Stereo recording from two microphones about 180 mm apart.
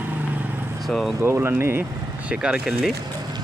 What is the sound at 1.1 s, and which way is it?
Speech, 15° right (ahead or behind).